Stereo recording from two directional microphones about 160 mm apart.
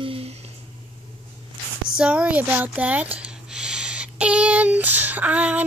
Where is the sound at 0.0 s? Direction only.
35° right (ahead or behind).